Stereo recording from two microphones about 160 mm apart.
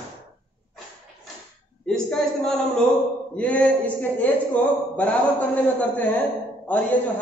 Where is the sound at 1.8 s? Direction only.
5° left (ahead or behind).